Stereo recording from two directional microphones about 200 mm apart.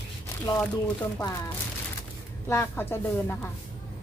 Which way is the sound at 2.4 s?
10° left (ahead or behind).